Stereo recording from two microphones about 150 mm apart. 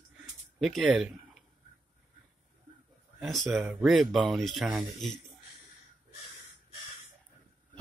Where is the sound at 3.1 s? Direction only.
Centre (ahead or behind).